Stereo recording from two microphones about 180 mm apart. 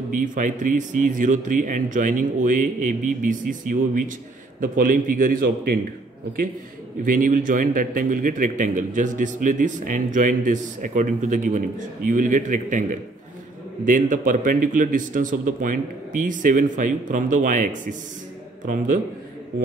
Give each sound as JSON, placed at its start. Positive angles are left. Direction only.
{"t": 0.1, "sound": "a man's voice", "side_deg": -45}
{"t": 4.6, "sound": "a man's voice", "side_deg": -50}
{"t": 7.1, "sound": "a man's voice", "side_deg": -50}
{"t": 13.8, "sound": "a man's voice", "side_deg": -45}